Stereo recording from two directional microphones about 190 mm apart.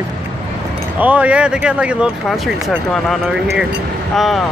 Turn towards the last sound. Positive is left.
turn(degrees=0)  # may be behind; listen again after turning